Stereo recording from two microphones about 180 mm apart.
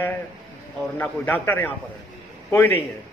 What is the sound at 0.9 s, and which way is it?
Speech, 10° left (ahead or behind).